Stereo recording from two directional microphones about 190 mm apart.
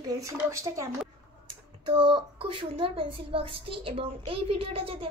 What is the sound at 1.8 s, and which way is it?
A woman's voice, 25° right (ahead or behind).